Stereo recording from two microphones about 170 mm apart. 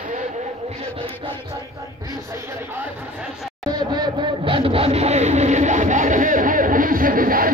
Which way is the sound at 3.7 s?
25° right (ahead or behind).